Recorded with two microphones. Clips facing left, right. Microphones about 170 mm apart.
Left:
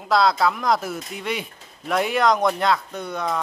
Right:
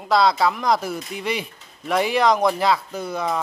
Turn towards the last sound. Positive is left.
turn(degrees=0)  # may be behind; listen again after turning